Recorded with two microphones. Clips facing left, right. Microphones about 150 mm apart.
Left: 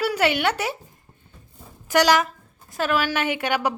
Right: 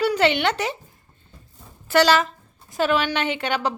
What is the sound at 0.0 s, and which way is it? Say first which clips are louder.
Speech: right 2 dB; 10° left (ahead or behind).